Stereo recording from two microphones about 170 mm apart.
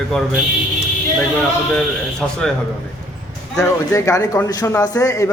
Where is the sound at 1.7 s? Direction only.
5° left (ahead or behind).